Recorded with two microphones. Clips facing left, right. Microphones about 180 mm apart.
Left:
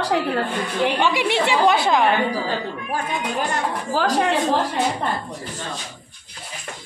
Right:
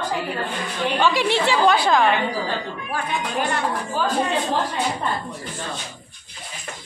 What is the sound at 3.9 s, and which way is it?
Speech, 80° left.